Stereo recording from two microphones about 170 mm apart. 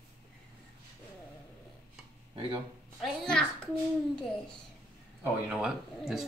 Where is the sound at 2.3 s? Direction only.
30° right (ahead or behind).